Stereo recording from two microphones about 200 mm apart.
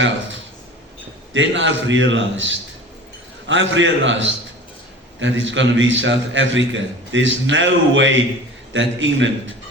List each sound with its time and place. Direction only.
1.3 s a man's voice: 70° right (ahead or behind)